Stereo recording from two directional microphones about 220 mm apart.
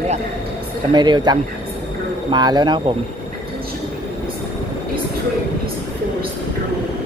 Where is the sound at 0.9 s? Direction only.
20° right (ahead or behind).